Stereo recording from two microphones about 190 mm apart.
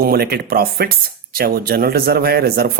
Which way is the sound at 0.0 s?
55° right (ahead or behind).